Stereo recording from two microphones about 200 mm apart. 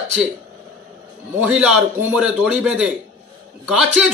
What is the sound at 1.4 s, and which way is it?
Speech, 5° right (ahead or behind).